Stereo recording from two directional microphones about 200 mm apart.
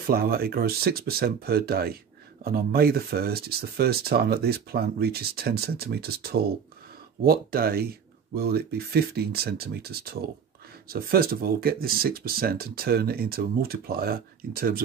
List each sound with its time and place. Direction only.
0.0 s speech: 50° right (ahead or behind)